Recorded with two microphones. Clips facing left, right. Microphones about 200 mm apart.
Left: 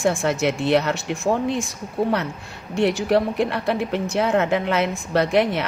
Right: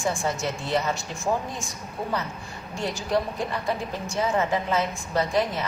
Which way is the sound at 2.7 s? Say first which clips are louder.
Left 8 dB; 70° left (ahead or behind).